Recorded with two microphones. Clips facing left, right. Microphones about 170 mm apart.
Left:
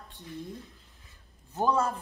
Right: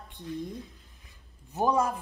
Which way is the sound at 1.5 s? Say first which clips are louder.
Right 1 dB; 15° right (ahead or behind).